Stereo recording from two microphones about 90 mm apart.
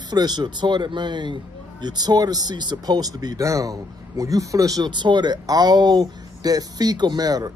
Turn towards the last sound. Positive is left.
turn(degrees=-45)  # may be behind; listen again after turning